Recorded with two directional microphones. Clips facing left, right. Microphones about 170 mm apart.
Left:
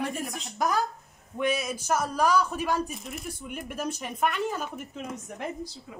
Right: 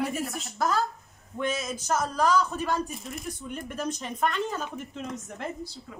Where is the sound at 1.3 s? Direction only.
10° left (ahead or behind).